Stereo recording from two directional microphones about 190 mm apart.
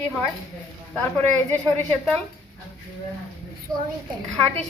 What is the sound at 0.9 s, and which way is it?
Speech, 5° left (ahead or behind).